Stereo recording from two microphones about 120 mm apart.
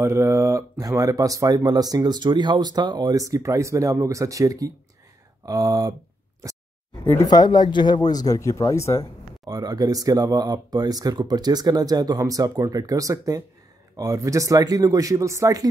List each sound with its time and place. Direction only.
0.0 s speech: 25° right (ahead or behind)
7.2 s speech: 35° left (ahead or behind)
9.4 s speech: 30° right (ahead or behind)